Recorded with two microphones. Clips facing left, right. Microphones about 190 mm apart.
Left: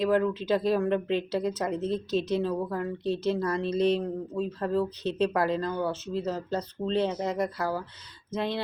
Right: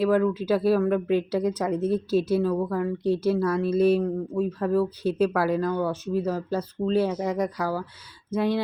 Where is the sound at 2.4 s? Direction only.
15° left (ahead or behind).